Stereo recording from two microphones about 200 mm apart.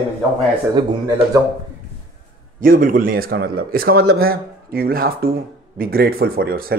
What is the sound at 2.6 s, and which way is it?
A man's voice, 45° right (ahead or behind).